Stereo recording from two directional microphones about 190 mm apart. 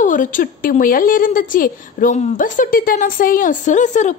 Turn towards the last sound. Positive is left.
turn(degrees=40)  # may be behind; listen again after turning